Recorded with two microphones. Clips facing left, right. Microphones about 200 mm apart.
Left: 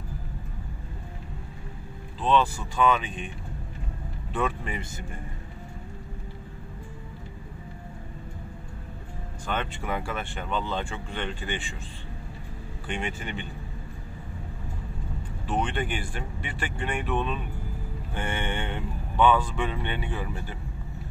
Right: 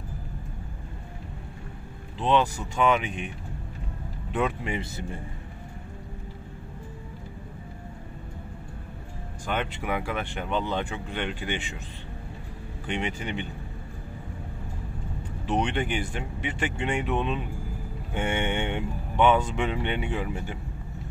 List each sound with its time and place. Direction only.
2.1 s speech: 15° right (ahead or behind)
4.3 s speech: 20° right (ahead or behind)
9.5 s speech: 10° right (ahead or behind)
12.9 s speech: 20° right (ahead or behind)
15.4 s speech: 20° right (ahead or behind)